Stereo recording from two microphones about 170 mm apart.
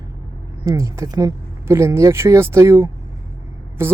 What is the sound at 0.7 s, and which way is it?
Speech, 15° right (ahead or behind).